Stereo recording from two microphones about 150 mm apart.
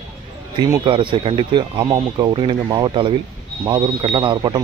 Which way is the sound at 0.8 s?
35° right (ahead or behind).